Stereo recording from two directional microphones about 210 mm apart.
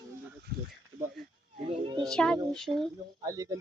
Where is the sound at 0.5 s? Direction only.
45° right (ahead or behind).